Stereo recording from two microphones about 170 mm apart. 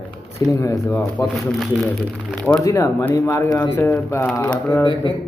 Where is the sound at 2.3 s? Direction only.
5° left (ahead or behind).